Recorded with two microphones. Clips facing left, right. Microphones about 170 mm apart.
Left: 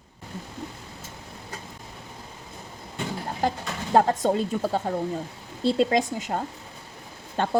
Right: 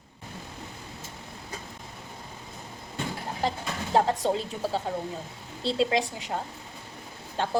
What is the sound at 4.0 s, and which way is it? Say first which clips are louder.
A woman's voice: left 4 dB; 50° left (ahead or behind).